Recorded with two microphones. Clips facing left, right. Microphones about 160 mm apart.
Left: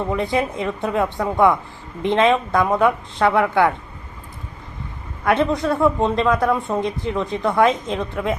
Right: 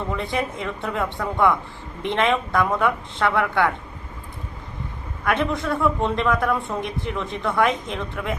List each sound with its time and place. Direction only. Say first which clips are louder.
0.1 s a man's voice: left 5 dB; 20° left (ahead or behind)
5.2 s a man's voice: left 5 dB; 20° left (ahead or behind)